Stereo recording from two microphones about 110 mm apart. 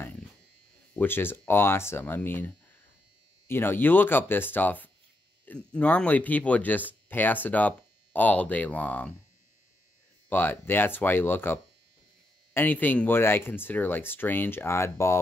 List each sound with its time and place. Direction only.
0.9 s speech: 20° left (ahead or behind)
10.3 s speech: 20° left (ahead or behind)